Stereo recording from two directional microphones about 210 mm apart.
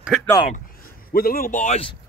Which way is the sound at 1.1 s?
45° left (ahead or behind).